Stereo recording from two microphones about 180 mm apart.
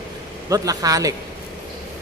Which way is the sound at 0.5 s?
20° right (ahead or behind).